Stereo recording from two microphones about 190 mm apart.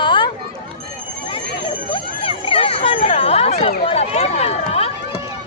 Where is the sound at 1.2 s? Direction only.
25° left (ahead or behind).